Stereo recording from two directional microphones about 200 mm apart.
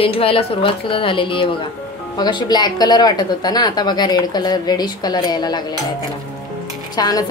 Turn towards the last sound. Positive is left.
turn(degrees=20)  # may be behind; listen again after turning